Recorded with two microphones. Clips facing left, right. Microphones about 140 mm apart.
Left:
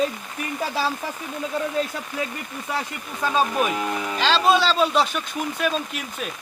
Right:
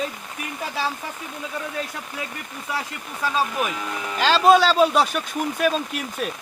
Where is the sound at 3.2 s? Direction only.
20° left (ahead or behind).